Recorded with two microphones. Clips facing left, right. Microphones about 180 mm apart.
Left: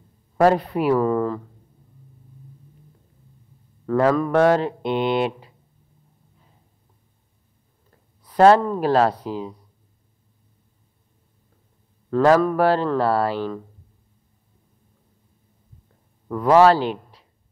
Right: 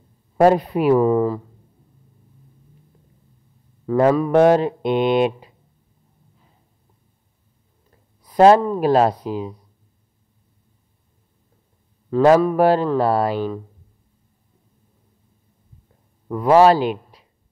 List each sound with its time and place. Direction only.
0.4 s speech: 15° right (ahead or behind)
3.8 s speech: 15° right (ahead or behind)
8.2 s speech: 15° right (ahead or behind)
12.2 s speech: 15° right (ahead or behind)
16.3 s speech: 10° right (ahead or behind)